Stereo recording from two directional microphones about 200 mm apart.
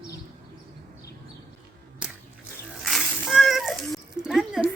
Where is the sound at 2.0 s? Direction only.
5° right (ahead or behind).